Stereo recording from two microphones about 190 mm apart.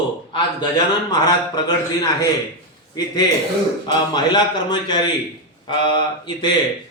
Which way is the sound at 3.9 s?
20° left (ahead or behind).